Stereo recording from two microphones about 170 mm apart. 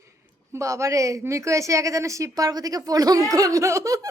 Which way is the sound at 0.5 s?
15° right (ahead or behind).